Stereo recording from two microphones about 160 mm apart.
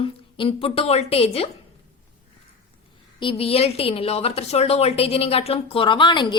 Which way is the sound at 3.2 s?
35° left (ahead or behind).